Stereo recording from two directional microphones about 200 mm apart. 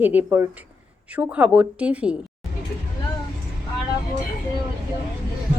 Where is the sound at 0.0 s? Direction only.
10° right (ahead or behind).